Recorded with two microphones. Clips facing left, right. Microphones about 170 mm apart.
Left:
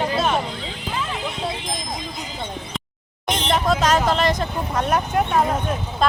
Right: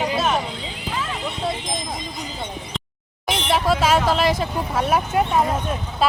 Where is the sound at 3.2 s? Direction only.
5° right (ahead or behind).